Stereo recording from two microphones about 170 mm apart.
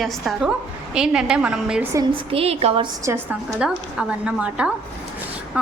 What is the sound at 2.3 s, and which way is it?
Speech, 35° right (ahead or behind).